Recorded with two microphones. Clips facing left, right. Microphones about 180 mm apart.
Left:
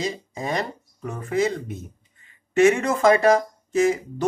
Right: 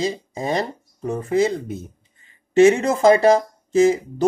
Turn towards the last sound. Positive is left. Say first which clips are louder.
# right 4 dB
turn(degrees=-25)  # may be behind; listen again after turning